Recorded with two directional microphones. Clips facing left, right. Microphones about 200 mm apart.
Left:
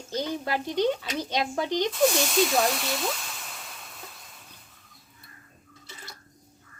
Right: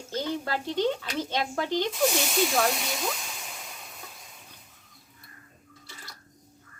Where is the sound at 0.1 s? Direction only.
15° left (ahead or behind).